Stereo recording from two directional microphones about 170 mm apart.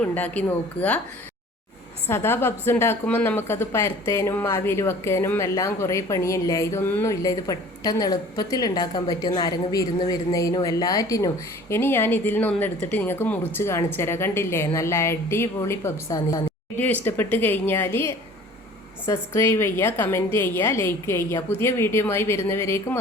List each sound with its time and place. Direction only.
0.0 s a woman's voice: 10° left (ahead or behind)
2.0 s a woman's voice: 15° left (ahead or behind)
16.7 s a woman's voice: 10° left (ahead or behind)